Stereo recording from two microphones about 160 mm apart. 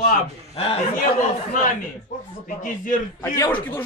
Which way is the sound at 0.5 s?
35° left (ahead or behind).